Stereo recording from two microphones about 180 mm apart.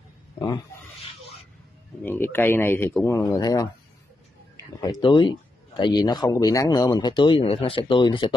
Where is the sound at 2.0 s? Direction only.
10° left (ahead or behind).